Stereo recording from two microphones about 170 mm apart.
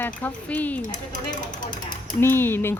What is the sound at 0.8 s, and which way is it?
Speech, 50° left (ahead or behind).